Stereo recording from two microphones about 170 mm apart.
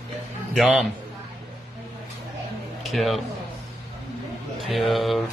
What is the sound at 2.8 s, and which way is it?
Speech, centre (ahead or behind).